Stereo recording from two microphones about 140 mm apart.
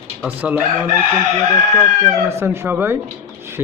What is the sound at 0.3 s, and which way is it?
Speech, 10° right (ahead or behind).